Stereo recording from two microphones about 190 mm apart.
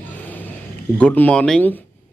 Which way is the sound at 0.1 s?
10° left (ahead or behind).